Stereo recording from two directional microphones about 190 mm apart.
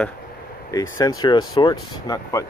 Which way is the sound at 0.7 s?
20° left (ahead or behind).